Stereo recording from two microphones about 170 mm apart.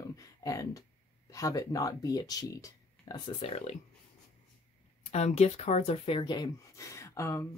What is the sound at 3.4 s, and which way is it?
Speech, 35° left (ahead or behind).